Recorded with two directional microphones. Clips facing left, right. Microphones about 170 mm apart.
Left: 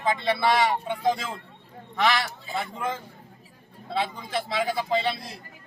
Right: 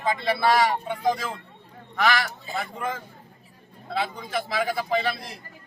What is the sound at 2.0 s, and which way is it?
A man's voice, 25° left (ahead or behind).